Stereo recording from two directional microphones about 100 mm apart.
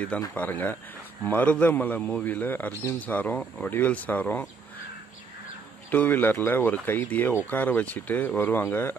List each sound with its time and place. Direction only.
0.3 s a man's voice: 15° left (ahead or behind)
5.9 s a man's voice: 20° left (ahead or behind)